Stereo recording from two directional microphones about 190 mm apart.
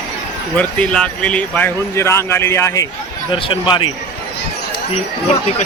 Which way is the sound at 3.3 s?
25° left (ahead or behind).